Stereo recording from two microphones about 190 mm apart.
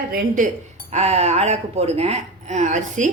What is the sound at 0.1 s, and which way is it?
Speech, 40° right (ahead or behind).